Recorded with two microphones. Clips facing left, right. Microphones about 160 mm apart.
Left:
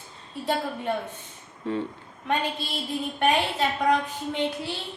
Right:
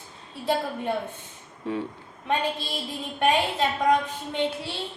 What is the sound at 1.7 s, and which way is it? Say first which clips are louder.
Speech: left 1 dB; 10° right (ahead or behind).